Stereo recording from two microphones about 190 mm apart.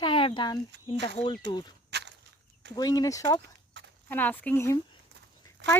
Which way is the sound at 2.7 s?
20° left (ahead or behind).